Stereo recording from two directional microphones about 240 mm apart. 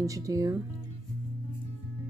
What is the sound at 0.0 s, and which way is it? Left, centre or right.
Speech, centre.